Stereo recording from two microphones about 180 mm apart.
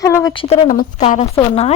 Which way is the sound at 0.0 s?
20° left (ahead or behind).